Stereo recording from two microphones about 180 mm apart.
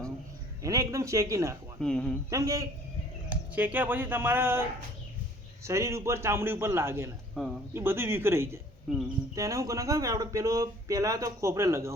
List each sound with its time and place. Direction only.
0.6 s a man's voice: 20° right (ahead or behind)
1.8 s speech: 5° left (ahead or behind)
2.3 s speech: 20° right (ahead or behind)
5.6 s a man's voice: 15° right (ahead or behind)
7.4 s speech: centre (ahead or behind)
7.7 s a man's voice: 15° right (ahead or behind)